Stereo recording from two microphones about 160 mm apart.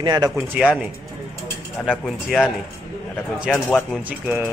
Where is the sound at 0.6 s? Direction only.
5° right (ahead or behind).